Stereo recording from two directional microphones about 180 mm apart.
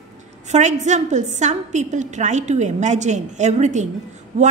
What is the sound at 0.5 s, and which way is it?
A woman's voice, 40° right (ahead or behind).